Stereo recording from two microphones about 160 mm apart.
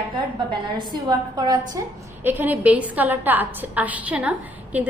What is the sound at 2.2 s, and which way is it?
A woman's voice, 10° right (ahead or behind).